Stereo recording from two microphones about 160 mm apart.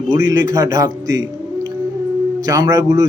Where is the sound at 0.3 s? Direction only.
25° right (ahead or behind).